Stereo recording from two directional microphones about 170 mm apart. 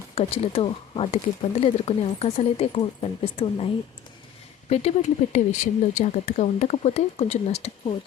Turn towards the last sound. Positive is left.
turn(degrees=40)  # may be behind; listen again after turning